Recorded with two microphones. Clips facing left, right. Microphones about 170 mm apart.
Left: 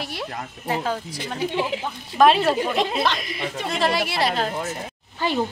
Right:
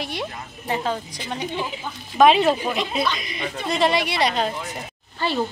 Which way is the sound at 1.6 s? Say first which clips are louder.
Left 4 dB; 75° left (ahead or behind).